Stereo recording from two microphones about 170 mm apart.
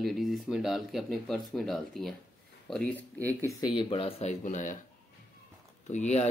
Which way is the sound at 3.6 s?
30° left (ahead or behind).